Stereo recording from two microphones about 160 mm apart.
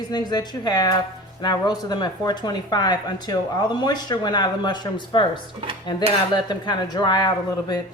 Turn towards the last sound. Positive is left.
turn(degrees=25)  # may be behind; listen again after turning